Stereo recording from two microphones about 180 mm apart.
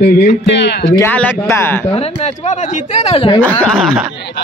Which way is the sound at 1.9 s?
35° left (ahead or behind).